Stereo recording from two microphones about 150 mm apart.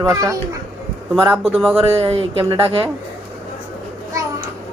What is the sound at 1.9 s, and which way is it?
Speech, 40° right (ahead or behind).